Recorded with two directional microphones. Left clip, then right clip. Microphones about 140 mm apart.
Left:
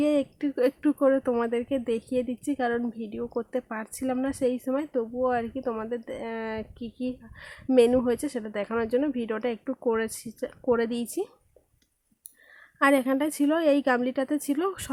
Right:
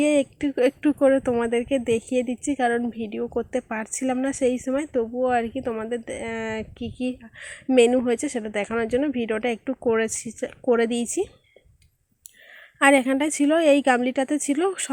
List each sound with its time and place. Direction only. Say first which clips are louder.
0.0 s speech: right 4 dB; 15° right (ahead or behind)
12.8 s speech: right 4 dB; 15° right (ahead or behind)